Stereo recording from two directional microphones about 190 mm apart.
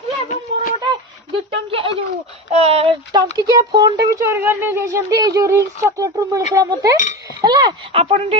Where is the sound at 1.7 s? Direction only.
25° right (ahead or behind).